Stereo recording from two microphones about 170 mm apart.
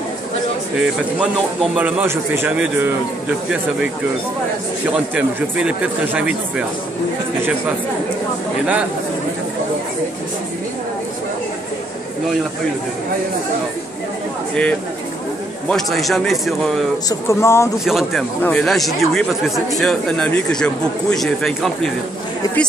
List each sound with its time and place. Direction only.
0.7 s a man's voice: 5° right (ahead or behind)
4.9 s a man's voice: 5° right (ahead or behind)
14.5 s speech: 5° left (ahead or behind)
17.1 s speech: 15° left (ahead or behind)
17.8 s speech: centre (ahead or behind)